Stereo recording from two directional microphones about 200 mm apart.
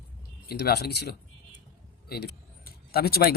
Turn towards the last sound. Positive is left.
turn(degrees=50)  # may be behind; listen again after turning